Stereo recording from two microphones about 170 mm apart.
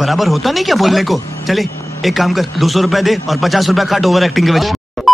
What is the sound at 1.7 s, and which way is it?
Vehicle, 15° left (ahead or behind).